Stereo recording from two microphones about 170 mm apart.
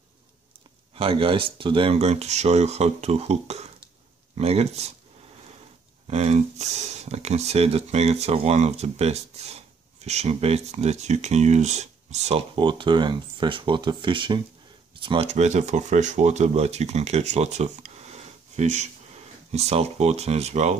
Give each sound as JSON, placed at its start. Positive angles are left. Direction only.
{"t": 0.9, "sound": "speech", "side_deg": -35}
{"t": 6.0, "sound": "speech", "side_deg": -40}
{"t": 15.2, "sound": "speech", "side_deg": -40}